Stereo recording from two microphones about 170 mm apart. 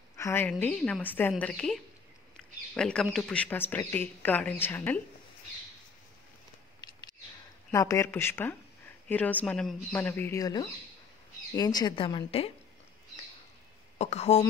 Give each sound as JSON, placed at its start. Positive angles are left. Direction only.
{"t": 0.2, "sound": "a woman's voice", "side_deg": 10}
{"t": 6.8, "sound": "a sound", "side_deg": 25}
{"t": 7.7, "sound": "a woman's voice", "side_deg": 15}
{"t": 13.9, "sound": "a woman's voice", "side_deg": 40}